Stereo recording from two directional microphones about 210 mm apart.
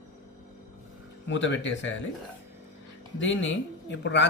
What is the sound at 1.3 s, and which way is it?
Speech, 60° left (ahead or behind).